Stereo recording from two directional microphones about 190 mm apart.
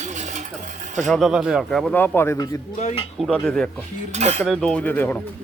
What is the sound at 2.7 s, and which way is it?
Speech, 35° left (ahead or behind).